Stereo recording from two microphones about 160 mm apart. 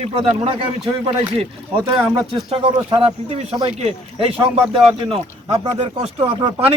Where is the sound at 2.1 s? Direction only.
35° right (ahead or behind).